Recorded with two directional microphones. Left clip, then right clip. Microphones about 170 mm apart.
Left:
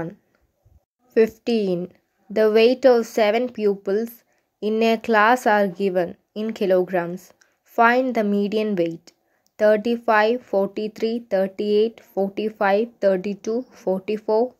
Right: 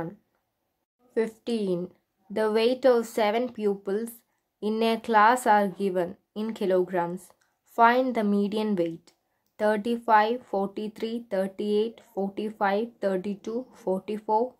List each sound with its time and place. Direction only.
1.1 s a woman's voice: 20° left (ahead or behind)